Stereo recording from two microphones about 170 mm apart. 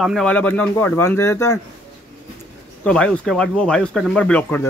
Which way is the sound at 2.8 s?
5° left (ahead or behind).